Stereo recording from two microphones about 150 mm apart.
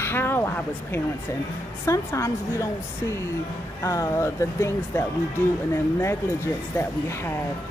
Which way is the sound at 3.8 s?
20° left (ahead or behind).